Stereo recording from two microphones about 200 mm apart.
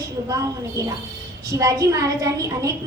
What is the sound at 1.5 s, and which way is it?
A woman's voice, 15° right (ahead or behind).